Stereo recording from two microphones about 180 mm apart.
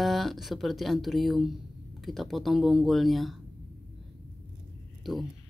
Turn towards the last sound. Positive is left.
turn(degrees=0)  # may be behind; listen again after turning